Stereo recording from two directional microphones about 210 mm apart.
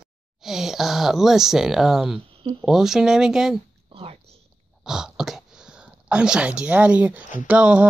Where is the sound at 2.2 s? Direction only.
25° right (ahead or behind).